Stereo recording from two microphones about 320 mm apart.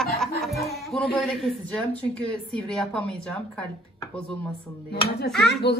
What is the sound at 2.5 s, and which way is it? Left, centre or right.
Speech, centre.